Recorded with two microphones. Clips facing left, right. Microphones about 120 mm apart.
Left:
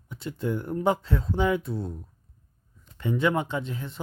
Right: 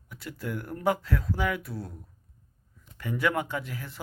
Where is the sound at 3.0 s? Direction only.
25° left (ahead or behind).